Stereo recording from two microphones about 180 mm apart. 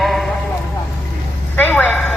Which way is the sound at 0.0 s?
Centre (ahead or behind).